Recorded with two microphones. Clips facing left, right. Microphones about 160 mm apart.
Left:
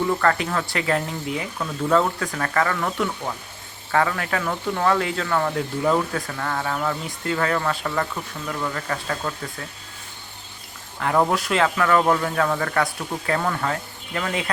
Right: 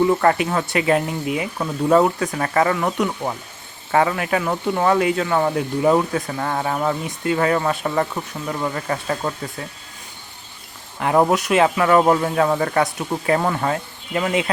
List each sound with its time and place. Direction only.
0.1 s speech: 20° right (ahead or behind)
11.0 s speech: 20° right (ahead or behind)